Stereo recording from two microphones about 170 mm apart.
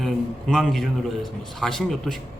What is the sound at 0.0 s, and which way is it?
A man's voice, centre (ahead or behind).